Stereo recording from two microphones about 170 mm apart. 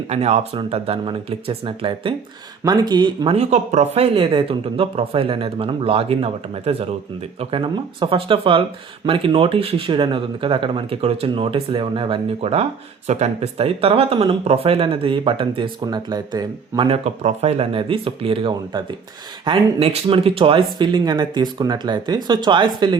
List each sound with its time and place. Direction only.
0.1 s speech: 40° right (ahead or behind)